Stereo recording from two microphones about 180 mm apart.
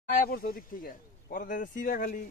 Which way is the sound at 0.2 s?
55° left (ahead or behind).